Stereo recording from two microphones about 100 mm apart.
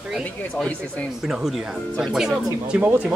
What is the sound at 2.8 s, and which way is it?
Speech, 20° right (ahead or behind).